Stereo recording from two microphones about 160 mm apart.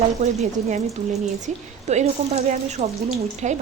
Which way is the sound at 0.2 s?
45° right (ahead or behind).